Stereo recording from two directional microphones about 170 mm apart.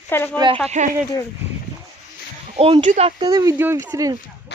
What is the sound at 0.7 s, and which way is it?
Speech, 45° right (ahead or behind).